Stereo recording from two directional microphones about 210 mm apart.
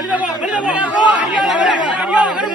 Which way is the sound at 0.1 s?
5° right (ahead or behind).